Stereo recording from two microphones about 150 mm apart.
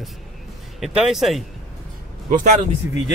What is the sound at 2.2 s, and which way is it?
Speech, 60° right (ahead or behind).